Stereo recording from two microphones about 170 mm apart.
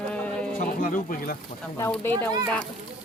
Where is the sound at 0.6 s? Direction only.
50° left (ahead or behind).